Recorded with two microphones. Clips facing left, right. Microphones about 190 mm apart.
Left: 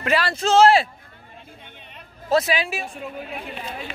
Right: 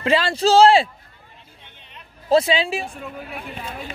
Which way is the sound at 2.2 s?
30° right (ahead or behind).